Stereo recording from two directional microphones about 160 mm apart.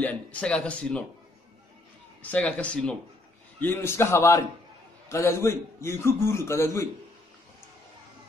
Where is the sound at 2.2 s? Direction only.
10° left (ahead or behind).